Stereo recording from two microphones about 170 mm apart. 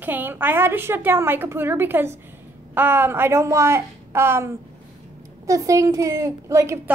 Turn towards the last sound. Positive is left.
turn(degrees=-15)  # may be behind; listen again after turning